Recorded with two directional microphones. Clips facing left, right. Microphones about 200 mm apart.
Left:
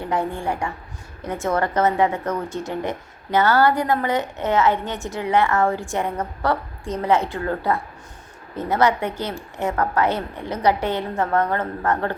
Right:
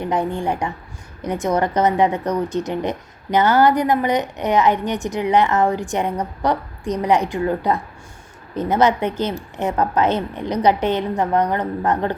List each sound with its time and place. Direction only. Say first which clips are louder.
0.0 s a woman's voice: right 3 dB; 20° right (ahead or behind)